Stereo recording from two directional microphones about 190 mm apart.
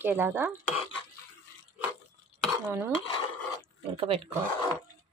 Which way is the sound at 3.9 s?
30° right (ahead or behind).